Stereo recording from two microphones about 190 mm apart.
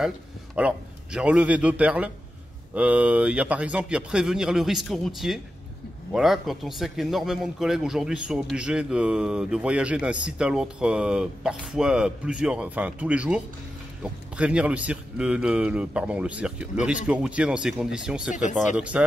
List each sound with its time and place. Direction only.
0.6 s a man's voice: 5° right (ahead or behind)
18.3 s speech: 40° left (ahead or behind)
18.8 s a man's voice: 5° right (ahead or behind)